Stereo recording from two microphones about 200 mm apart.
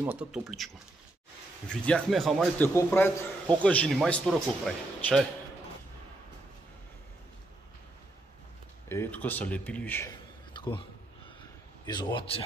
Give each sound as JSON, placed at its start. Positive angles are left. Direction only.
{"t": 0.0, "sound": "a man's voice", "side_deg": -5}
{"t": 1.7, "sound": "a man's voice", "side_deg": 5}
{"t": 2.7, "sound": "a man's voice", "side_deg": 10}
{"t": 8.8, "sound": "speech", "side_deg": 10}
{"t": 10.5, "sound": "a sound", "side_deg": 25}
{"t": 11.8, "sound": "a man's voice", "side_deg": 20}